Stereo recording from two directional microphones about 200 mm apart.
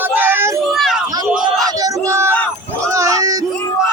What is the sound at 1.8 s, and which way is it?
Yell, 15° right (ahead or behind).